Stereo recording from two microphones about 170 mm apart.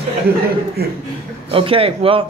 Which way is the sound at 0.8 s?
65° right (ahead or behind).